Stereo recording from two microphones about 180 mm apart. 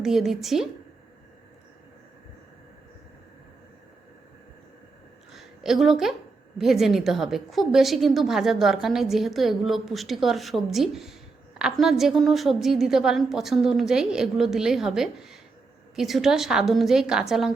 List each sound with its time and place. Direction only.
0.0 s a woman's voice: centre (ahead or behind)
5.3 s a sound: centre (ahead or behind)
6.6 s a woman's voice: centre (ahead or behind)